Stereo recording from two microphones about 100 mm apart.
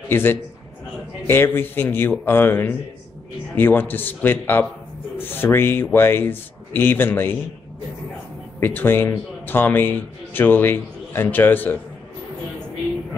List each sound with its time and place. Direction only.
0.1 s a man's voice: 25° left (ahead or behind)
8.5 s a man's voice: 20° left (ahead or behind)